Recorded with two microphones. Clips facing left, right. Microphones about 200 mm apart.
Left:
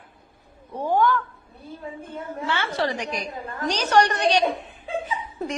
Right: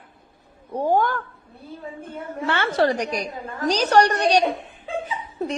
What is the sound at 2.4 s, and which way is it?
A woman's voice, 55° right (ahead or behind).